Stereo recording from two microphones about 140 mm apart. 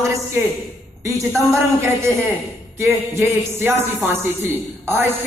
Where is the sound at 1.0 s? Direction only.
20° right (ahead or behind).